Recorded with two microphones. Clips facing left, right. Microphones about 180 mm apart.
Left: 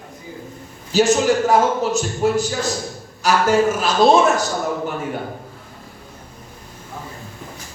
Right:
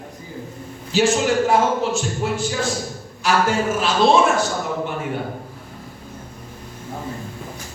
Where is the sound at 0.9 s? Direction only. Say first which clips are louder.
Left 2 dB; 40° left (ahead or behind).